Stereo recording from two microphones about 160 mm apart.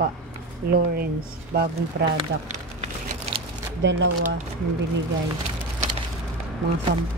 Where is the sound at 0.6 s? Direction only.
75° right (ahead or behind).